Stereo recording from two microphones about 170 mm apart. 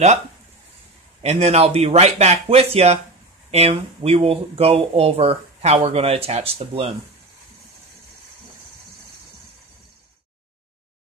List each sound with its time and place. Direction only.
1.2 s speech: 40° right (ahead or behind)